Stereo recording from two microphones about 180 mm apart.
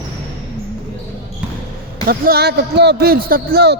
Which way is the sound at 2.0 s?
55° right (ahead or behind).